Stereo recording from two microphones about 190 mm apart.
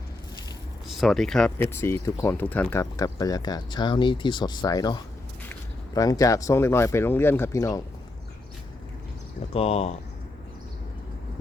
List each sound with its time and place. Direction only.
0.9 s speech: centre (ahead or behind); by 7.8 s 15° left (ahead or behind)
9.5 s speech: 30° left (ahead or behind)